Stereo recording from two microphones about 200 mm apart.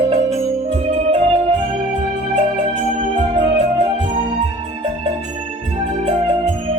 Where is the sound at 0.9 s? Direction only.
30° right (ahead or behind).